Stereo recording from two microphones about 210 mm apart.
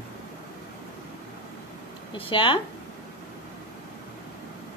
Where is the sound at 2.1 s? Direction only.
25° left (ahead or behind).